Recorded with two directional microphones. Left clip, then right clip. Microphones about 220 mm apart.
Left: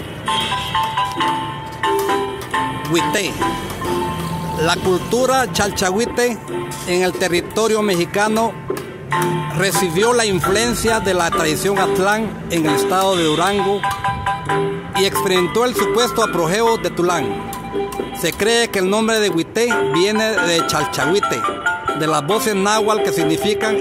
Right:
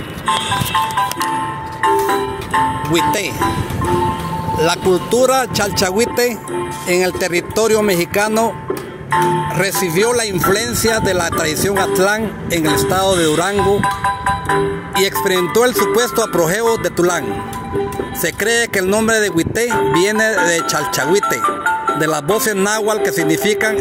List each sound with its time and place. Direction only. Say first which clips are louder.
1.8 s music: right 3 dB; 50° right (ahead or behind)
2.9 s speech: right 2 dB; 5° right (ahead or behind)
4.6 s speech: right 2 dB; 10° right (ahead or behind)
9.1 s speech: right 4 dB; 55° right (ahead or behind)
9.6 s speech: left 3 dB; 10° right (ahead or behind)
13.6 s music: right 3 dB; 55° right (ahead or behind)
15.0 s speech: right 1 dB; 15° right (ahead or behind)
18.2 s speech: even; 15° right (ahead or behind)
21.4 s speech: right 3 dB; 55° right (ahead or behind)
22.0 s speech: right 1 dB; 15° right (ahead or behind)